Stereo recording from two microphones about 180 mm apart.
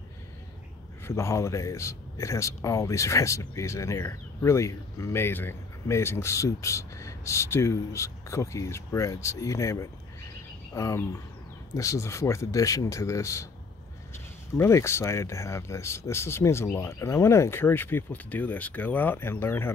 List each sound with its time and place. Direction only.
1.0 s a man's voice: 15° left (ahead or behind)